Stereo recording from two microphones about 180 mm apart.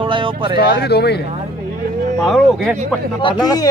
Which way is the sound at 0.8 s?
65° left (ahead or behind).